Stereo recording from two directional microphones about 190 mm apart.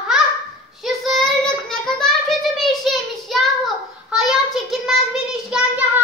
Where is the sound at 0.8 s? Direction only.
Centre (ahead or behind).